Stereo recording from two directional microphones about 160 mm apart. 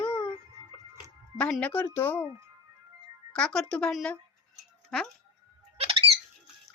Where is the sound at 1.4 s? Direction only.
5° left (ahead or behind).